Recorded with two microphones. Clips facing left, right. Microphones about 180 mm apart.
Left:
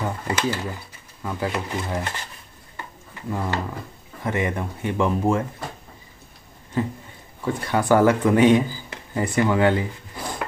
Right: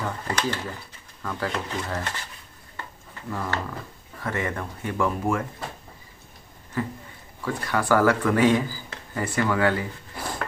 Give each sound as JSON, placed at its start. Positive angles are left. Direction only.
{"t": 0.4, "sound": "speech", "side_deg": 10}
{"t": 3.3, "sound": "speech", "side_deg": 20}
{"t": 6.8, "sound": "speech", "side_deg": 25}